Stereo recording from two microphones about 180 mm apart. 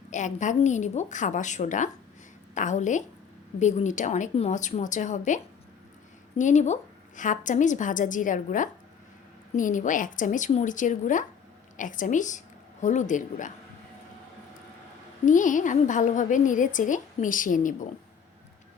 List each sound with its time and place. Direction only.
0.1 s a woman's voice: 40° left (ahead or behind)
15.3 s a woman's voice: 45° left (ahead or behind)